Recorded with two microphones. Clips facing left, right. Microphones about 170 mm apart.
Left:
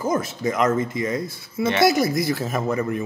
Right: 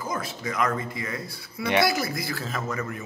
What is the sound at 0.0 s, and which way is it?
A man's voice, 25° left (ahead or behind).